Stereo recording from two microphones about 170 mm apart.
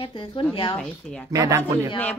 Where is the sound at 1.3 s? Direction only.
20° right (ahead or behind).